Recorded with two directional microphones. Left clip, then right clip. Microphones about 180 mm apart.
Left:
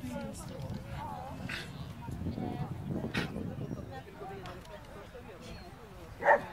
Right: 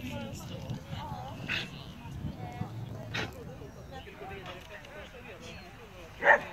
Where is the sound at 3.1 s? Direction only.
55° left (ahead or behind).